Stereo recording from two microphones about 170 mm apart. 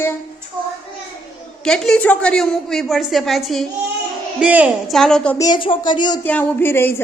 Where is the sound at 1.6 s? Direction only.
5° left (ahead or behind).